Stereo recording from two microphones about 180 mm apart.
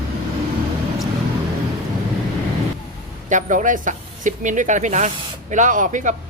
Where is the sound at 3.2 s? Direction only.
45° right (ahead or behind).